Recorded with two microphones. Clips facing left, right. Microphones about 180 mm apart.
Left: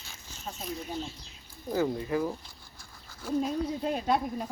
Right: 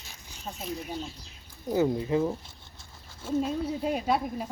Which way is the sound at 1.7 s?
20° right (ahead or behind).